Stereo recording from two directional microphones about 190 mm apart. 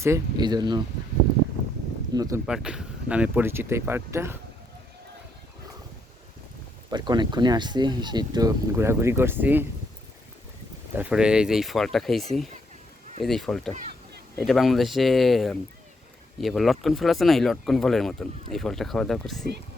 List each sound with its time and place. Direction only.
0.0 s speech: 20° right (ahead or behind)
2.1 s speech: 20° right (ahead or behind)
2.5 s speech: 5° right (ahead or behind)
6.9 s speech: 25° right (ahead or behind)
10.9 s speech: 5° right (ahead or behind)